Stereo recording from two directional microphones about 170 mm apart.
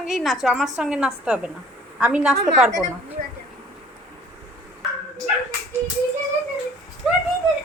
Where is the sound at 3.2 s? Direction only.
40° right (ahead or behind).